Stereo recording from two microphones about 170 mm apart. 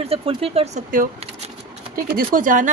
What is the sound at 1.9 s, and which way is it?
Speech, 60° right (ahead or behind).